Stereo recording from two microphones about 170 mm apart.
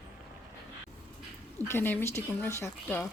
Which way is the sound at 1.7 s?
10° left (ahead or behind).